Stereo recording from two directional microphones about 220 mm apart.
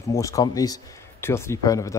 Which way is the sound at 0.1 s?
15° left (ahead or behind).